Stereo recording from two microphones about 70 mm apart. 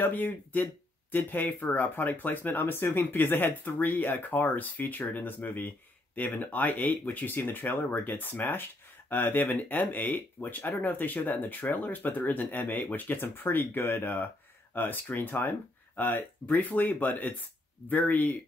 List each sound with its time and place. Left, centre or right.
0.0 s speech: left